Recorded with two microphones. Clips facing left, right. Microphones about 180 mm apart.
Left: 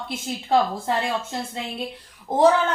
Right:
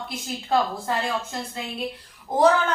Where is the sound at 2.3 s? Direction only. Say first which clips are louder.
Left 1 dB; 25° left (ahead or behind).